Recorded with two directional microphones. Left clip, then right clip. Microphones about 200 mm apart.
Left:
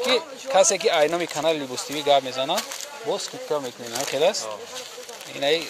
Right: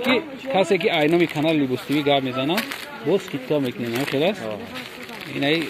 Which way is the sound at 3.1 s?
15° left (ahead or behind).